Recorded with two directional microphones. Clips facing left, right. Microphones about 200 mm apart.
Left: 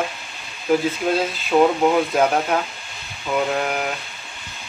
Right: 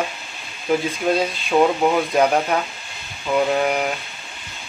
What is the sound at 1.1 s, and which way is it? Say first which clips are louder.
Speech: right 2 dB; 5° right (ahead or behind).